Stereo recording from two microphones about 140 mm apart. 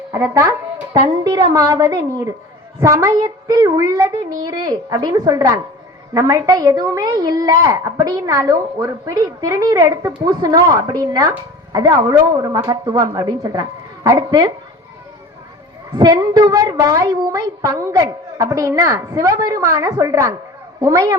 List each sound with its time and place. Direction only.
1.2 s speech: 30° right (ahead or behind)
16.0 s speech: 30° right (ahead or behind)